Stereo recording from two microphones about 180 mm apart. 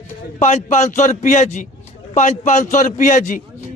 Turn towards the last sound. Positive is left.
turn(degrees=45)  # may be behind; listen again after turning